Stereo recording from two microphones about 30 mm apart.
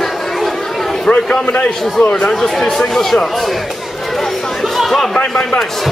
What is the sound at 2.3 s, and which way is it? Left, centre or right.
Speech, centre.